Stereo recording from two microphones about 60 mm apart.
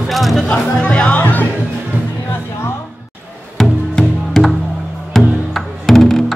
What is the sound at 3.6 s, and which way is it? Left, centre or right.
Music, centre.